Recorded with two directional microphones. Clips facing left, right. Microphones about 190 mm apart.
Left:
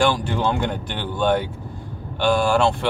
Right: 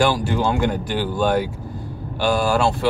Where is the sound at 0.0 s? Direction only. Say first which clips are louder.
Right 1 dB; 5° right (ahead or behind).